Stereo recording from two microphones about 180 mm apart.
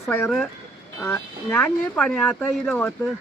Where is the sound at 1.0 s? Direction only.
15° left (ahead or behind).